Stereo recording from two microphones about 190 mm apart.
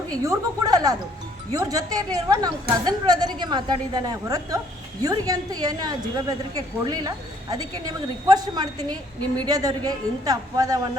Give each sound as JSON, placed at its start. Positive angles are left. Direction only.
{"t": 0.2, "sound": "a woman's voice", "side_deg": -20}